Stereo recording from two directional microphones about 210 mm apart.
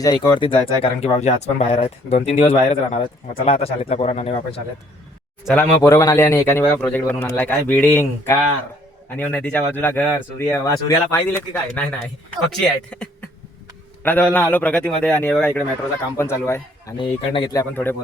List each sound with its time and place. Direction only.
0.0 s speech: 20° left (ahead or behind)
5.8 s a man's voice: 15° left (ahead or behind)